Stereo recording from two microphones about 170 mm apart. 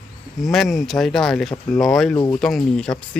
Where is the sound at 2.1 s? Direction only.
20° left (ahead or behind).